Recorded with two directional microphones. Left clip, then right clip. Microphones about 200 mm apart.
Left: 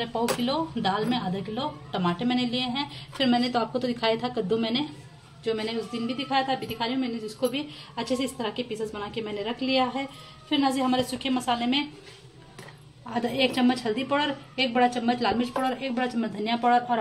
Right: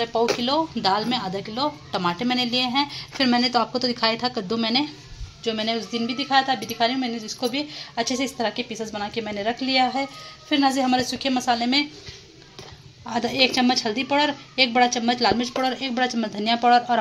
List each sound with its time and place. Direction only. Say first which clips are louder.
0.0 s speech: right 5 dB; 15° right (ahead or behind)
13.1 s a woman's voice: right 5 dB; 20° right (ahead or behind)